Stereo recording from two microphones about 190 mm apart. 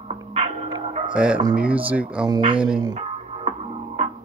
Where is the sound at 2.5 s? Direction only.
5° right (ahead or behind).